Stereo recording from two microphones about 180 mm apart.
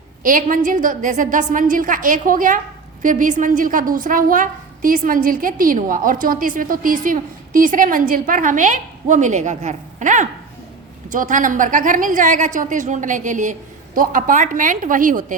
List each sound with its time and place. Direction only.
0.2 s a woman's voice: 50° right (ahead or behind)